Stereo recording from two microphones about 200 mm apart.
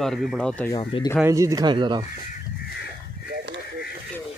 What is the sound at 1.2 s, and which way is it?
Speech, 15° right (ahead or behind).